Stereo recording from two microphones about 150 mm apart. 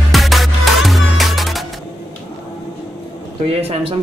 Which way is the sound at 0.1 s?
Centre (ahead or behind).